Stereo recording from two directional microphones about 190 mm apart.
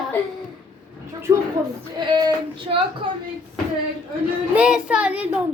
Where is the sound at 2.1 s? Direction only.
25° right (ahead or behind).